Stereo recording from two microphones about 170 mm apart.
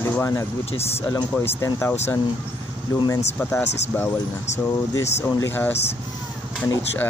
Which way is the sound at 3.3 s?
15° left (ahead or behind).